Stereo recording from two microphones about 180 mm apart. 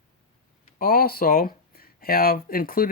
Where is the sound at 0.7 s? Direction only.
55° left (ahead or behind).